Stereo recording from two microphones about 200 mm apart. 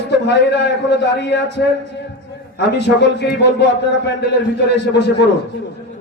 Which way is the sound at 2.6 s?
60° left (ahead or behind).